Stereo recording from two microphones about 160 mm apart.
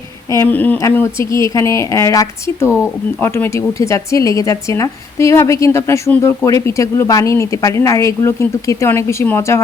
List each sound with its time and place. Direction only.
0.3 s speech: 15° left (ahead or behind)